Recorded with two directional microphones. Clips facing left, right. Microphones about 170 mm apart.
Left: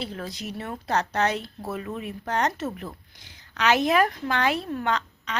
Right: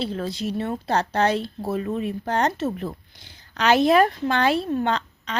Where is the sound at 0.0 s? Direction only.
30° right (ahead or behind).